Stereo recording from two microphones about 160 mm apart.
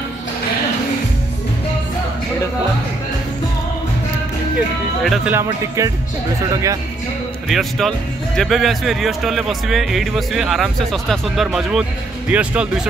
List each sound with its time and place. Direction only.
5.0 s speech: centre (ahead or behind)
5.3 s speech: 15° right (ahead or behind)
7.4 s speech: centre (ahead or behind)